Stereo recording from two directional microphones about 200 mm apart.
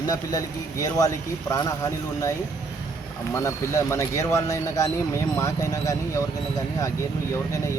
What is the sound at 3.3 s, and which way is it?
Speech, 15° left (ahead or behind).